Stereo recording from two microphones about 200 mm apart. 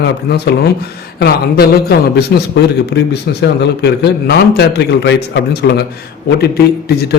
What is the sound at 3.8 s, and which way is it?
A man's voice, 55° left (ahead or behind).